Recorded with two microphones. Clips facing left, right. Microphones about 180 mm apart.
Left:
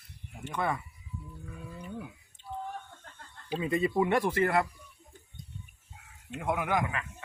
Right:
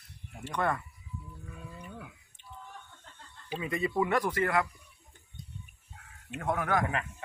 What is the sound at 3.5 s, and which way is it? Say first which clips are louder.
Speech: left 3 dB; 25° left (ahead or behind).